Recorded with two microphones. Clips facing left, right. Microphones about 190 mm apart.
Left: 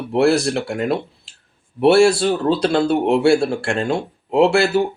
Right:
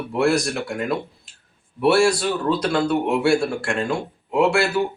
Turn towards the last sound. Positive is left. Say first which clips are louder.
# left 4 dB
turn(degrees=30)  # may be behind; listen again after turning